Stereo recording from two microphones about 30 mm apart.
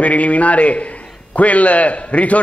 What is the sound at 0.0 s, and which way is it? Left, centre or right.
A man's voice, left.